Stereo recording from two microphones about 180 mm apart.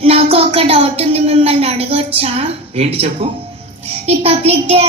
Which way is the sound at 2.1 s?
35° right (ahead or behind).